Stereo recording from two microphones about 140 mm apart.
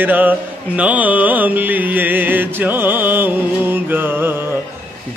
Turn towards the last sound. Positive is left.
turn(degrees=-15)  # may be behind; listen again after turning